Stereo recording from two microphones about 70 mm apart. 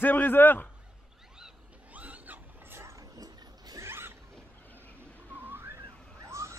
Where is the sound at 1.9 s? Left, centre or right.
Right.